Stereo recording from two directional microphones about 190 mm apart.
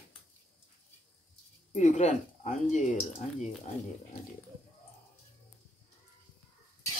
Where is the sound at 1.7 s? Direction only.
40° left (ahead or behind).